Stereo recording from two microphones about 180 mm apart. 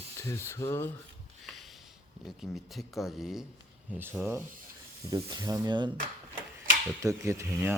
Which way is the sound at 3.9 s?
10° right (ahead or behind).